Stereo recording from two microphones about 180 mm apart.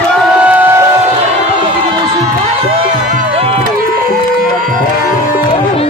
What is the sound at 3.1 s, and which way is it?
Music, 45° right (ahead or behind).